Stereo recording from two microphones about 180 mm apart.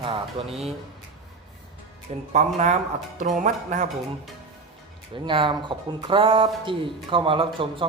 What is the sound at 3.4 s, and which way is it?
Speech, 40° right (ahead or behind).